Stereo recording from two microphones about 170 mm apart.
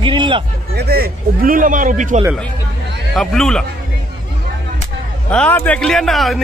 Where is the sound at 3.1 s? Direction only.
Centre (ahead or behind).